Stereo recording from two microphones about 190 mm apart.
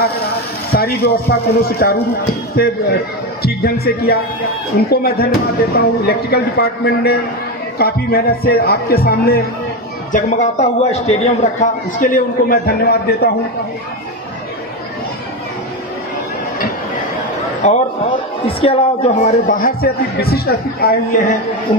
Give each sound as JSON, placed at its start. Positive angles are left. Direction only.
{"t": 0.7, "sound": "a man's voice", "side_deg": 55}
{"t": 10.1, "sound": "a man's voice", "side_deg": 35}
{"t": 17.6, "sound": "a man's voice", "side_deg": 35}